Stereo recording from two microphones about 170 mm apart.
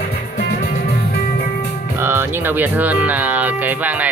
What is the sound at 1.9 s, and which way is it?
Speech, 15° right (ahead or behind).